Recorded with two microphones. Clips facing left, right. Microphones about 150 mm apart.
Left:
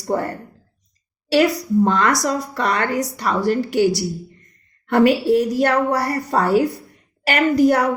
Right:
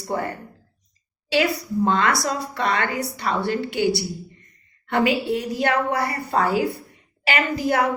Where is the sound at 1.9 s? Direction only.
45° left (ahead or behind).